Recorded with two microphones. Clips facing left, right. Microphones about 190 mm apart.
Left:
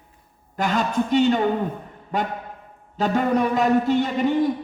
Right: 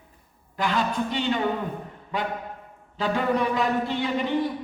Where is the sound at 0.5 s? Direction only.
45° left (ahead or behind).